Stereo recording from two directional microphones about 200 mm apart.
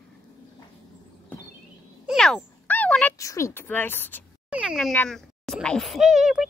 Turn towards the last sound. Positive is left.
turn(degrees=0)  # may be behind; listen again after turning